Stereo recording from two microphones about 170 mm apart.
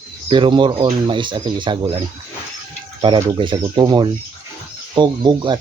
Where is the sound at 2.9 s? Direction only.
25° right (ahead or behind).